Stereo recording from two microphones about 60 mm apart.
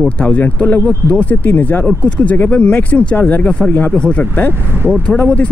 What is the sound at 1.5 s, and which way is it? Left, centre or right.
Speech, left.